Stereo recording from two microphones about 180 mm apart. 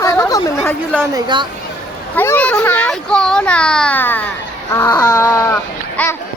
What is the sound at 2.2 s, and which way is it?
A child's voice, 10° left (ahead or behind).